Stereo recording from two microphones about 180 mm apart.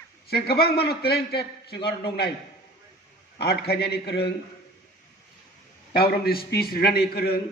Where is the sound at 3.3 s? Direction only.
60° left (ahead or behind).